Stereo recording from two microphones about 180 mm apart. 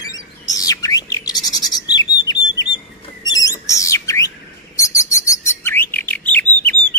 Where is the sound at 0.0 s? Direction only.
20° left (ahead or behind).